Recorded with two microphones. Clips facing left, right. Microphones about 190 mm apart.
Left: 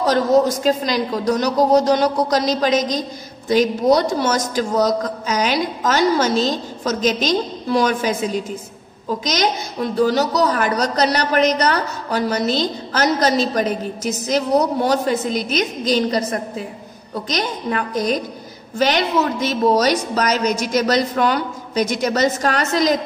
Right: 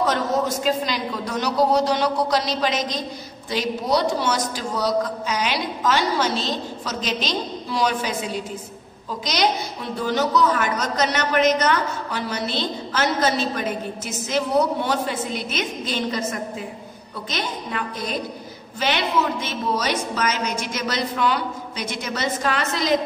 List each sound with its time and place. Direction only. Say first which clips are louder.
0.0 s a woman's voice: left 7 dB; 35° left (ahead or behind)